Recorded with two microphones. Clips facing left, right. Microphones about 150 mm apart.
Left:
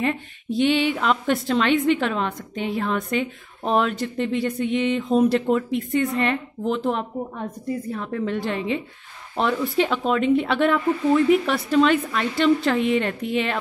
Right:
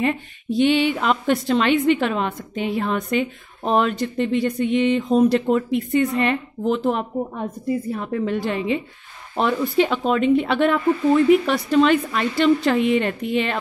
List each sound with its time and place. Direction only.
0.0 s a woman's voice: centre (ahead or behind)